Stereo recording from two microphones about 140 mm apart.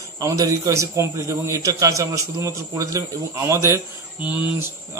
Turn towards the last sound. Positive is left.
turn(degrees=-10)  # may be behind; listen again after turning